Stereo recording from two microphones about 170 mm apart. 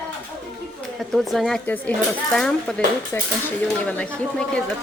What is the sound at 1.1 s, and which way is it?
Speech, centre (ahead or behind).